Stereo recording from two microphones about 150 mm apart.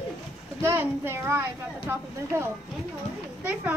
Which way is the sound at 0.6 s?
15° right (ahead or behind).